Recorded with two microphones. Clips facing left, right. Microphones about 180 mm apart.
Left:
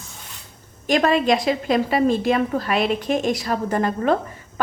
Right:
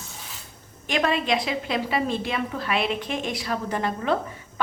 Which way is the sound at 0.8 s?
40° left (ahead or behind).